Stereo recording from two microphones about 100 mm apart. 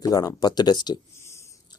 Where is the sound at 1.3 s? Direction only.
30° left (ahead or behind).